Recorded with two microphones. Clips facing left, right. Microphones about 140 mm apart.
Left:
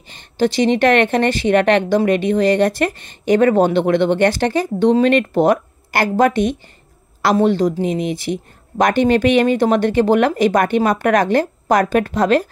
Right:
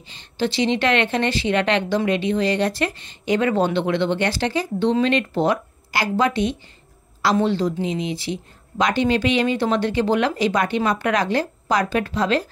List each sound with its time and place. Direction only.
0.1 s speech: 45° left (ahead or behind)